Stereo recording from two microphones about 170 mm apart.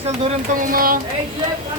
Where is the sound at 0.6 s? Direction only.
55° right (ahead or behind).